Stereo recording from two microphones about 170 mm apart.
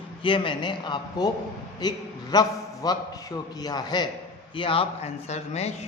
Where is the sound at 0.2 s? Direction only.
30° left (ahead or behind).